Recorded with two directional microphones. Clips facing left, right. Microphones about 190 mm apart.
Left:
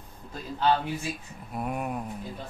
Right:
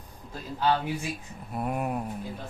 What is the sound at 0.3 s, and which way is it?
Speech, 10° right (ahead or behind).